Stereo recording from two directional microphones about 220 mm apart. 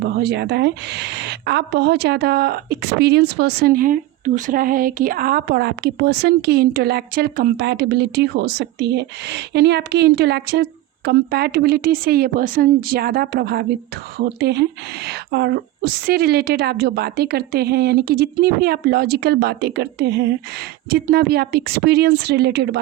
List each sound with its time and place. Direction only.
0.0 s a woman's voice: 50° right (ahead or behind)